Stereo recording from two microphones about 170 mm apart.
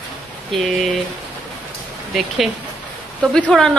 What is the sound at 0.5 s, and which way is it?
Speech, centre (ahead or behind).